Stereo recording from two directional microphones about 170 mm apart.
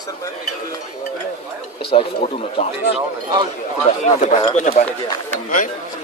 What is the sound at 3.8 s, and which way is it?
Speech, 45° left (ahead or behind).